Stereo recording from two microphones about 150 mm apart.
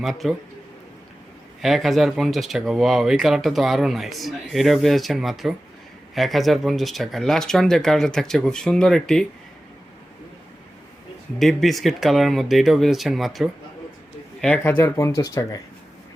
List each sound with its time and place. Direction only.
0.0 s speech: centre (ahead or behind)
1.6 s speech: centre (ahead or behind)
11.3 s speech: centre (ahead or behind)
14.4 s speech: 10° left (ahead or behind)